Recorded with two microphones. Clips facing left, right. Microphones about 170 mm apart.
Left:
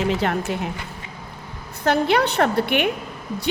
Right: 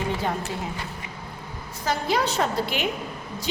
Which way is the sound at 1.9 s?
65° left (ahead or behind).